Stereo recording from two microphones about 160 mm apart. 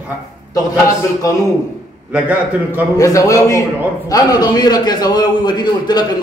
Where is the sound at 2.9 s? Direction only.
20° left (ahead or behind).